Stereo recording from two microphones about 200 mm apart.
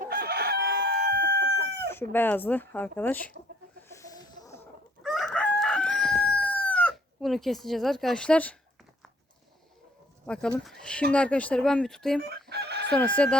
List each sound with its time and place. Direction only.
0.0 s chicken: 50° right (ahead or behind)
2.1 s speech: 10° left (ahead or behind)
3.9 s a sound: 15° left (ahead or behind)
5.0 s chicken: centre (ahead or behind)
10.2 s speech: 5° left (ahead or behind)
12.5 s chicken: 55° right (ahead or behind)
12.9 s speech: 5° left (ahead or behind)